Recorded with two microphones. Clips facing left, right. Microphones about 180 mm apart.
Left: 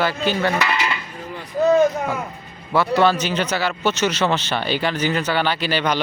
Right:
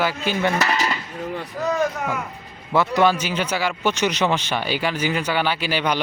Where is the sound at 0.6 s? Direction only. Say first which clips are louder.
Even; 40° right (ahead or behind).